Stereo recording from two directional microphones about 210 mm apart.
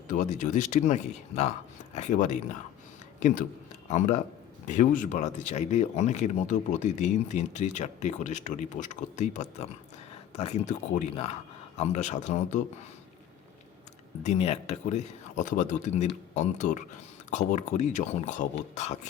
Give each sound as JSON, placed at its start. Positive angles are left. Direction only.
{"t": 0.1, "sound": "speech", "side_deg": 35}
{"t": 14.3, "sound": "speech", "side_deg": 30}